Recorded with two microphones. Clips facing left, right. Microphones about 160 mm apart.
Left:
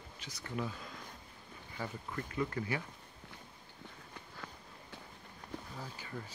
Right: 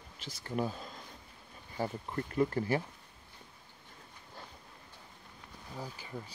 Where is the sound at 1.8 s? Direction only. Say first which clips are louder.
Right 6 dB; 35° right (ahead or behind).